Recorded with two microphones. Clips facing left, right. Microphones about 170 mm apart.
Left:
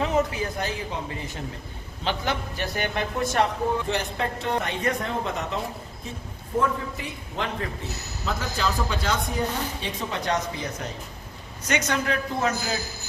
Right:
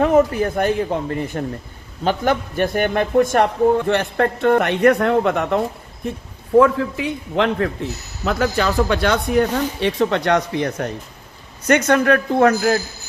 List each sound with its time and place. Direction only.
0.0 s a man's voice: 50° right (ahead or behind)